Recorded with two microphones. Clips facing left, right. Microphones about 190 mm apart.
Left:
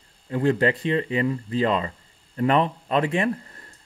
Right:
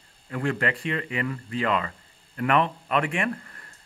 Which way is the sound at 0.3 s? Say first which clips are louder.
Left 6 dB; 30° left (ahead or behind).